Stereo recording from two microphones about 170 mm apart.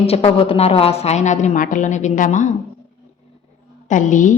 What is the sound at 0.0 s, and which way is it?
A woman's voice, 35° left (ahead or behind).